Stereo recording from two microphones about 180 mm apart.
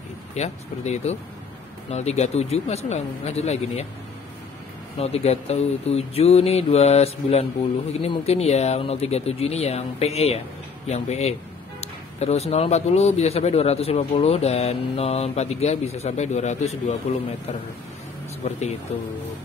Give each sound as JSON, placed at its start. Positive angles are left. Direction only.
{"t": 0.3, "sound": "speech", "side_deg": 40}
{"t": 4.9, "sound": "speech", "side_deg": 35}
{"t": 18.4, "sound": "speech", "side_deg": 35}